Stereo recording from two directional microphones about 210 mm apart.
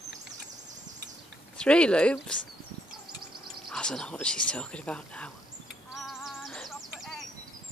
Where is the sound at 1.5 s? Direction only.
5° left (ahead or behind).